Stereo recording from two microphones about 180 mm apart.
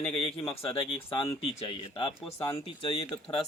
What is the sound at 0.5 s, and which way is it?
Speech, 30° left (ahead or behind).